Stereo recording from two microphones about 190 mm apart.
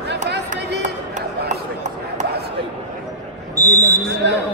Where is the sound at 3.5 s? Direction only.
15° right (ahead or behind).